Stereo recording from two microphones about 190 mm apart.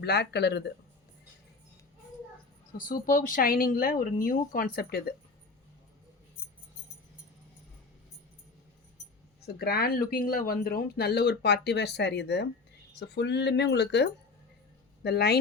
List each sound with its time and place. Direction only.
0.0 s speech: 60° left (ahead or behind)
2.7 s speech: 45° left (ahead or behind)
9.6 s speech: 55° left (ahead or behind)